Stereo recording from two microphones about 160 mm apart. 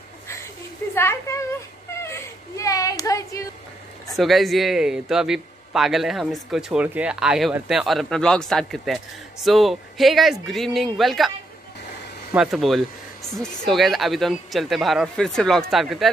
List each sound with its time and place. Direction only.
0.9 s a woman's voice: 15° left (ahead or behind)
2.0 s a sound: 20° left (ahead or behind)
4.1 s a man's voice: centre (ahead or behind)
12.4 s a man's voice: centre (ahead or behind)